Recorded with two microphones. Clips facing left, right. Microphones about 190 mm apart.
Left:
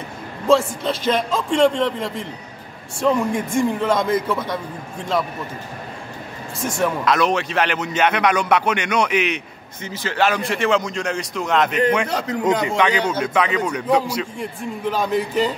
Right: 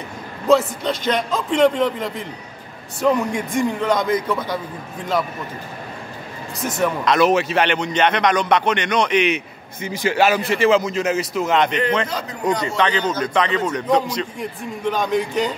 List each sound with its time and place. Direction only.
0.5 s a man's voice: centre (ahead or behind)
6.8 s a man's voice: centre (ahead or behind)
9.8 s a man's voice: 10° right (ahead or behind)
12.1 s a man's voice: 75° left (ahead or behind)
12.6 s a man's voice: 15° left (ahead or behind)